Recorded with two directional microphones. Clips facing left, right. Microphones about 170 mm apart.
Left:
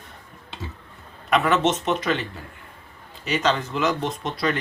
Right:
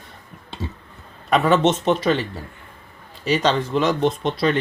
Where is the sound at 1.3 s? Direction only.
30° right (ahead or behind).